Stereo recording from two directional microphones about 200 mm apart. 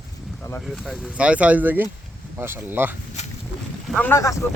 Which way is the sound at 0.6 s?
Centre (ahead or behind).